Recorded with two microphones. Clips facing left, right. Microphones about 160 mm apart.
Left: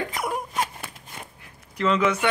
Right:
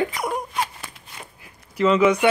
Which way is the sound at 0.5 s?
45° left (ahead or behind).